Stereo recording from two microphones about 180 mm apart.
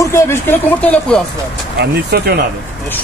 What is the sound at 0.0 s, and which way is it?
Speech, 15° left (ahead or behind).